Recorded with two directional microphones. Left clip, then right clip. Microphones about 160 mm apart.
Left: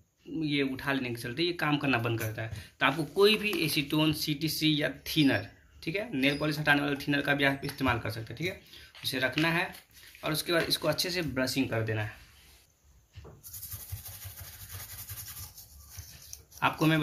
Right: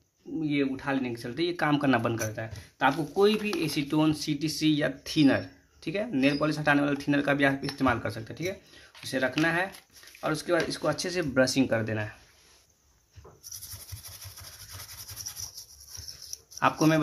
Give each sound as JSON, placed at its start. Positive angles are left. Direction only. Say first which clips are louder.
{"t": 0.4, "sound": "speech", "louder": "right 2 dB", "side_deg": -25}
{"t": 15.5, "sound": "dog", "louder": "right 7 dB", "side_deg": -30}